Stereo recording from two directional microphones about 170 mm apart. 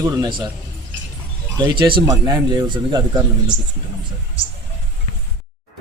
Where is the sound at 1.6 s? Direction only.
25° right (ahead or behind).